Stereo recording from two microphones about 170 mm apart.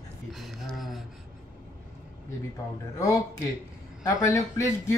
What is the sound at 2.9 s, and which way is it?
A man's voice, 20° left (ahead or behind).